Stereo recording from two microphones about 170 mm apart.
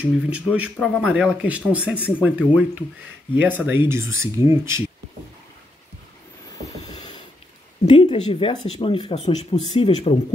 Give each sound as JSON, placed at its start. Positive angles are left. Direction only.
{"t": 0.0, "sound": "speech", "side_deg": -10}
{"t": 7.8, "sound": "speech", "side_deg": 35}